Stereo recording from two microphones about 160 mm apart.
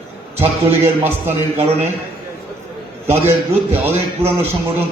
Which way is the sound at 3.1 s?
15° right (ahead or behind).